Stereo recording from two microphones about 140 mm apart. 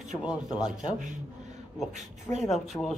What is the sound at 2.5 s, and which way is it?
Speech, centre (ahead or behind).